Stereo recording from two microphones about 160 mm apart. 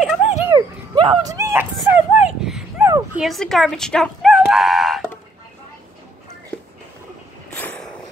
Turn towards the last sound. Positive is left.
turn(degrees=10)  # may be behind; listen again after turning